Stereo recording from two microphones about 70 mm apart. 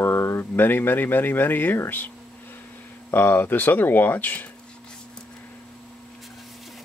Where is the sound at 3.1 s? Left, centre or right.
Left.